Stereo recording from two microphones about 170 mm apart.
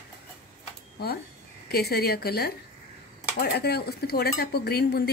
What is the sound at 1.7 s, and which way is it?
Speech, 70° left (ahead or behind).